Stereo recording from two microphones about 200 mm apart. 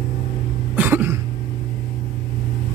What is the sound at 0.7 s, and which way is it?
Cough, 10° right (ahead or behind).